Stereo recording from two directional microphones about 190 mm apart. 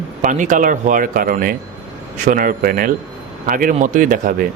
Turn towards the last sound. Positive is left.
turn(degrees=-45)  # may be behind; listen again after turning